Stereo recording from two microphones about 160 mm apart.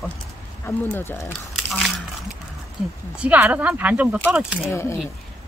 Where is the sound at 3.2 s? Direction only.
10° right (ahead or behind).